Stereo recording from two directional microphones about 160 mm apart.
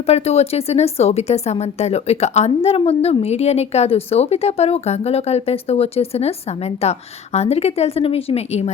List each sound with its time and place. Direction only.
0.0 s speech: 40° left (ahead or behind)